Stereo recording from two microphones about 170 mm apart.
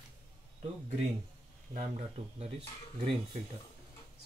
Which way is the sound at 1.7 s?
45° right (ahead or behind).